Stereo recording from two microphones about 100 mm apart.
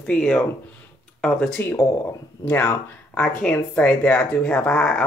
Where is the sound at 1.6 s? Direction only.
20° left (ahead or behind).